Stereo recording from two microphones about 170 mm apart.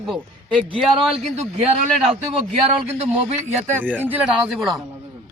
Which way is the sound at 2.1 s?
40° right (ahead or behind).